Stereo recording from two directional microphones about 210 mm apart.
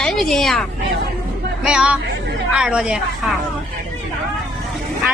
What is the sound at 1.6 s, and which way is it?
A woman's voice, 5° right (ahead or behind).